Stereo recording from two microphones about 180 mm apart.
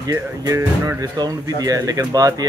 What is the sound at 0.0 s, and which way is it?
Speech, 20° right (ahead or behind).